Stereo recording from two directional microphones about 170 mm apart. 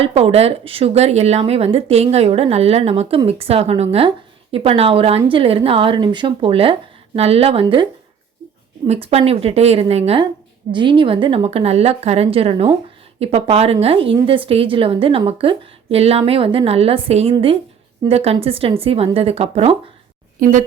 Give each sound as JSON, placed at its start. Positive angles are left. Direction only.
{"t": 0.0, "sound": "speech", "side_deg": -35}
{"t": 8.9, "sound": "speech", "side_deg": -40}
{"t": 10.7, "sound": "speech", "side_deg": -30}
{"t": 20.4, "sound": "a woman's voice", "side_deg": -45}